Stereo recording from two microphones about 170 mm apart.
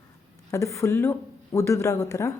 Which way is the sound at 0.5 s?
15° left (ahead or behind).